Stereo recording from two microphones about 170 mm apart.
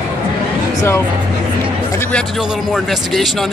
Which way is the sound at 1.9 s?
10° left (ahead or behind).